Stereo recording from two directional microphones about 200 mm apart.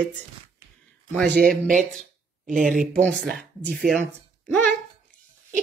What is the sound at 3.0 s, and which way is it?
Speech, 5° left (ahead or behind).